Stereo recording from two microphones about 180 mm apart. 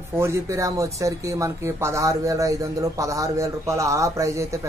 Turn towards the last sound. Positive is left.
turn(degrees=-15)  # may be behind; listen again after turning